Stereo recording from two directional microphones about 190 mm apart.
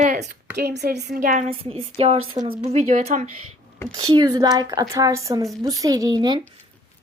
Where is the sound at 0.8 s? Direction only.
60° right (ahead or behind).